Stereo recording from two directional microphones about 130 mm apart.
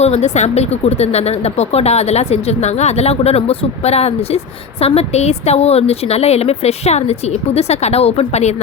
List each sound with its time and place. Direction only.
0.0 s a woman's voice: 55° left (ahead or behind)